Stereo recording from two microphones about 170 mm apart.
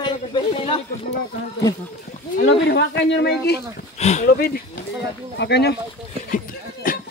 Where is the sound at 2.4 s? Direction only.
90° left.